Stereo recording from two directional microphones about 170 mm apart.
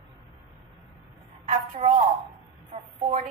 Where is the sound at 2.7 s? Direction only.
40° right (ahead or behind).